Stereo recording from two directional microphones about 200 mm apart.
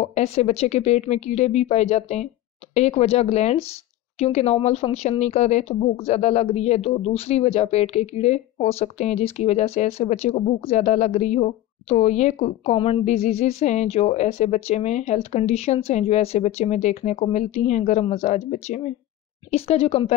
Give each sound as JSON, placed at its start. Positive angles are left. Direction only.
{"t": 0.0, "sound": "speech", "side_deg": 30}